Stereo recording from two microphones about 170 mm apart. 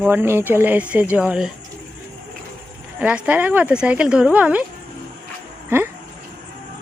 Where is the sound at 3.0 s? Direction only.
10° right (ahead or behind).